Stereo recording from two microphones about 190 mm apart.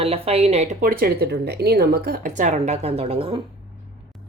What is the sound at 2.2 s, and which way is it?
A woman's voice, 40° right (ahead or behind).